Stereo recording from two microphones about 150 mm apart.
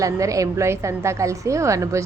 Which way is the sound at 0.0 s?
20° right (ahead or behind).